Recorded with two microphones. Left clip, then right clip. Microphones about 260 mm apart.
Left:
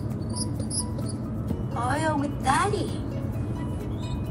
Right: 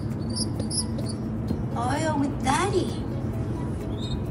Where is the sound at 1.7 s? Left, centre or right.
Centre.